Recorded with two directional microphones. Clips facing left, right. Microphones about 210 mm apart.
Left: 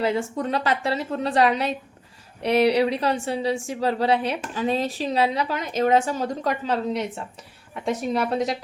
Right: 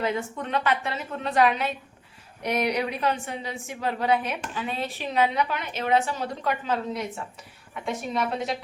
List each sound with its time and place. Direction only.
0.0 s a woman's voice: 30° left (ahead or behind)
8.1 s a woman's voice: 40° left (ahead or behind)